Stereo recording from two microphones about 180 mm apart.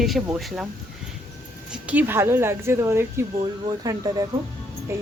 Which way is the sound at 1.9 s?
15° right (ahead or behind).